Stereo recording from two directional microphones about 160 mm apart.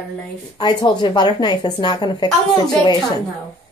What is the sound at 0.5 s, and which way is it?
A woman's voice, 30° left (ahead or behind).